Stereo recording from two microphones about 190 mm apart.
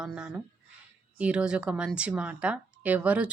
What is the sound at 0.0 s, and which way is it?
Speech, 5° right (ahead or behind).